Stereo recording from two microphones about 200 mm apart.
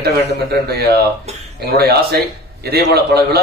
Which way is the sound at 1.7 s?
50° right (ahead or behind).